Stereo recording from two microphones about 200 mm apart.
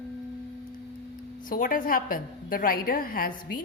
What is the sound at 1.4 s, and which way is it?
A woman's voice, 45° left (ahead or behind).